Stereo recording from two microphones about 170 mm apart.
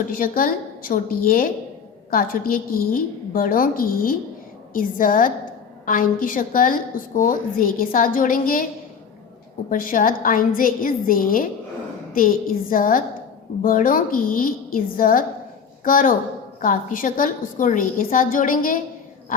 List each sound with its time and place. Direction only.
0.1 s a woman's voice: 55° left (ahead or behind)
9.6 s a woman's voice: 55° left (ahead or behind)